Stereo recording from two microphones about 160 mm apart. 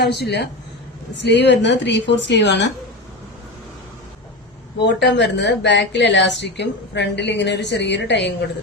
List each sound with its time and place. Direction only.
0.0 s speech: 90° left
4.8 s speech: 90° left